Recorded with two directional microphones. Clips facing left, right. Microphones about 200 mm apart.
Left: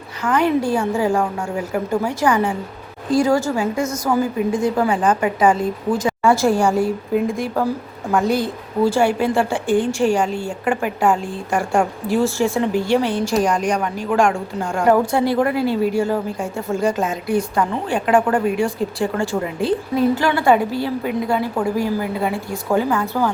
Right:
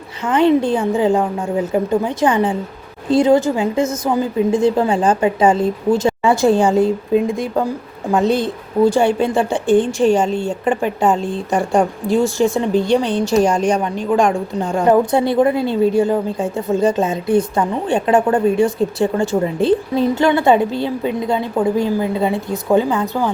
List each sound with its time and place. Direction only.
0.3 s a woman's voice: 25° right (ahead or behind)